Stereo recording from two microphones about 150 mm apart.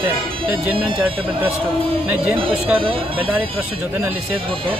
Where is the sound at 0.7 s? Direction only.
35° right (ahead or behind).